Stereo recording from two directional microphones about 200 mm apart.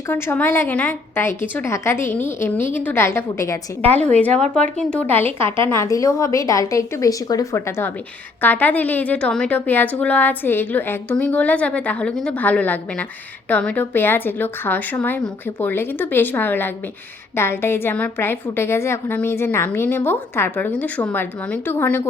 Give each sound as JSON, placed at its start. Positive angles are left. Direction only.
{"t": 0.1, "sound": "a woman's voice", "side_deg": 10}